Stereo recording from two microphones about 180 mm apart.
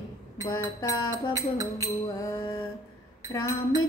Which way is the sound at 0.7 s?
20° left (ahead or behind).